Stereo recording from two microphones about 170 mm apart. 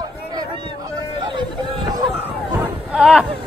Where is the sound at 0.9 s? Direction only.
25° right (ahead or behind).